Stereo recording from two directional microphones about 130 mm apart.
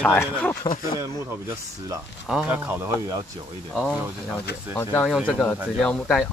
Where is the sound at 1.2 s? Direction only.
20° right (ahead or behind).